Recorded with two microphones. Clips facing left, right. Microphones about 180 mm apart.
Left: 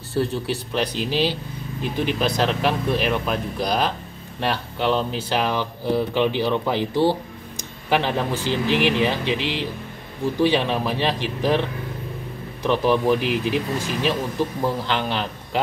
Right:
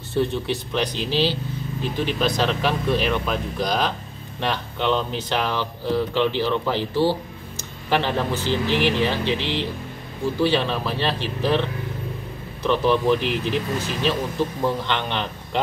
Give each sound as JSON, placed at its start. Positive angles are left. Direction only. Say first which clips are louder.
{"t": 0.1, "sound": "speech", "louder": "right 1 dB", "side_deg": 5}
{"t": 0.9, "sound": "speech", "louder": "even", "side_deg": 50}
{"t": 1.8, "sound": "speech", "louder": "left 1 dB", "side_deg": 5}
{"t": 12.6, "sound": "speech", "louder": "even", "side_deg": 10}